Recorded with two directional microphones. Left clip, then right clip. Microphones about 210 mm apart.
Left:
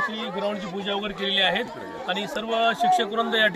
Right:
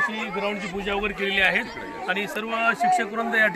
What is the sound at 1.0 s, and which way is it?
Speech, 25° left (ahead or behind).